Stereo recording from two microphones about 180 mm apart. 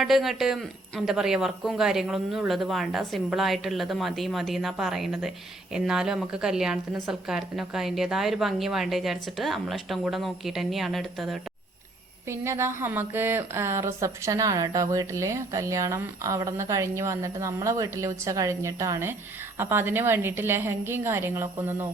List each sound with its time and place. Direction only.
0.0 s a woman's voice: centre (ahead or behind)
12.3 s a woman's voice: 15° right (ahead or behind)